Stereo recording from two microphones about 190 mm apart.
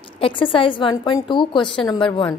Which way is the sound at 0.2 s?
25° left (ahead or behind).